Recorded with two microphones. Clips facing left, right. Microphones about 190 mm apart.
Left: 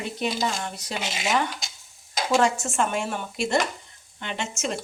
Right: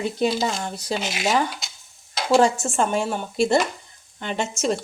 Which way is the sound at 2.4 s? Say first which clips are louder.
Right 4 dB; 30° right (ahead or behind).